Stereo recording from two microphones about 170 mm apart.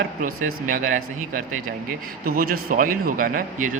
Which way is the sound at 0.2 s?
50° right (ahead or behind).